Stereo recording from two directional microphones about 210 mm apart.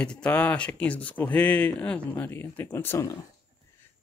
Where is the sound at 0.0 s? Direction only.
5° left (ahead or behind).